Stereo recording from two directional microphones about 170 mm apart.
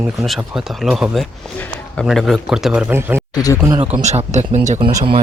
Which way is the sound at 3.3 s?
20° left (ahead or behind).